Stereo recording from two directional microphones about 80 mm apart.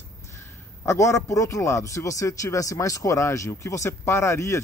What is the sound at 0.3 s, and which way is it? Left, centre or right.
A man's voice, left.